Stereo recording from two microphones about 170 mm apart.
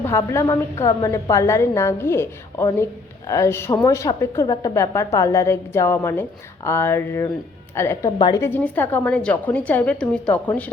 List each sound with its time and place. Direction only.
0.0 s a woman's voice: 15° left (ahead or behind)
8.4 s a woman's voice: 10° left (ahead or behind)